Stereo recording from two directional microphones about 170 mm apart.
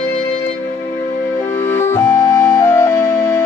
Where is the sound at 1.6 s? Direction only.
15° left (ahead or behind).